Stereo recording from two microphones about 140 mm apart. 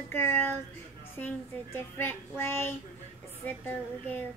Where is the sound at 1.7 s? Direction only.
15° left (ahead or behind).